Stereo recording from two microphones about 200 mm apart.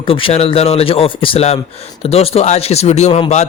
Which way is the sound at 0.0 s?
25° left (ahead or behind).